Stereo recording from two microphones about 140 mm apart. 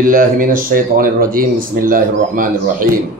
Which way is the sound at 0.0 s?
85° right.